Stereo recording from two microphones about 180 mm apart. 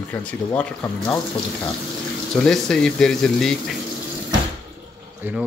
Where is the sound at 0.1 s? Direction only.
10° left (ahead or behind).